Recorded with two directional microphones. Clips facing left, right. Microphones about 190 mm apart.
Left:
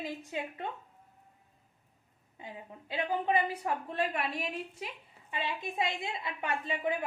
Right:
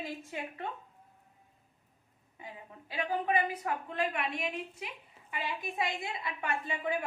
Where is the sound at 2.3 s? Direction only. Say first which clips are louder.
Left 2 dB; 25° left (ahead or behind).